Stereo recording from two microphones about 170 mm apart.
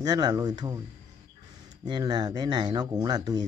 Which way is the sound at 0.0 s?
25° right (ahead or behind).